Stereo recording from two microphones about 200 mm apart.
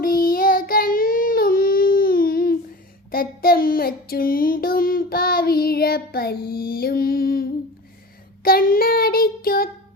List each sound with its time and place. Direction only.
0.0 s child singing: 45° left (ahead or behind)